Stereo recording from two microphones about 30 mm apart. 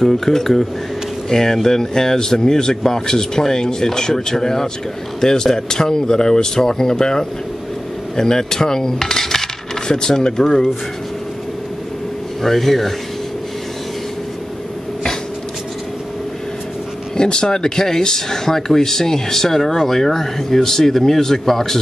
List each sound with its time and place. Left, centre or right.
0.0 s speech: centre
8.2 s cutlery: centre
9.8 s speech: left
12.4 s speech: centre
17.2 s speech: left